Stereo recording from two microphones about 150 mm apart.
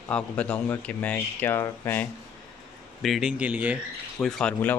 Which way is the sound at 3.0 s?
Centre (ahead or behind).